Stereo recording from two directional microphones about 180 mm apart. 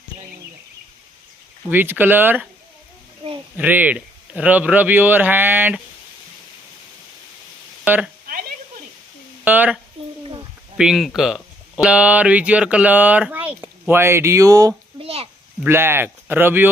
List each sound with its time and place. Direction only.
1.7 s a man's voice: 10° right (ahead or behind)
3.6 s a man's voice: 10° right (ahead or behind)
7.9 s a man's voice: 10° right (ahead or behind)
9.4 s speech: 10° right (ahead or behind)
10.8 s speech: centre (ahead or behind); by 14.8 s 20° right (ahead or behind)
15.0 s a sound: 35° right (ahead or behind)
15.6 s a man's voice: 10° right (ahead or behind)